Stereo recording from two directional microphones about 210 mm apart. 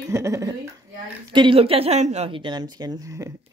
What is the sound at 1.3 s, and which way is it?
Speech, 25° right (ahead or behind).